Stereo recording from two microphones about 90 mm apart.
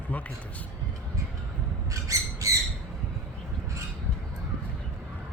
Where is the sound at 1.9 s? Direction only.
35° right (ahead or behind).